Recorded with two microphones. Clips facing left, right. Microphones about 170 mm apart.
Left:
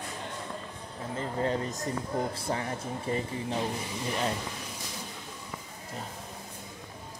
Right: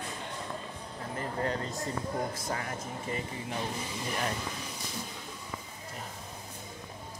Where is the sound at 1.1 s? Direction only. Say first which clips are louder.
Left 3 dB; 20° left (ahead or behind).